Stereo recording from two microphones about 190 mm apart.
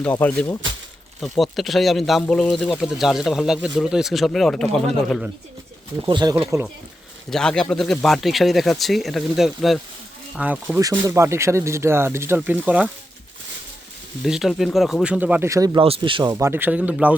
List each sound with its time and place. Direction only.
0.0 s speech: 10° left (ahead or behind)
6.1 s speech: 25° right (ahead or behind)
7.3 s speech: 5° left (ahead or behind)
14.3 s speech: centre (ahead or behind); by 16.3 s 25° right (ahead or behind)
16.3 s speech: 15° right (ahead or behind)